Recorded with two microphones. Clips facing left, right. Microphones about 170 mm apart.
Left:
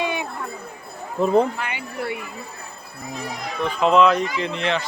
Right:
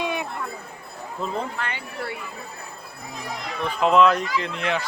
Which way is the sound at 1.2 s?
60° left (ahead or behind).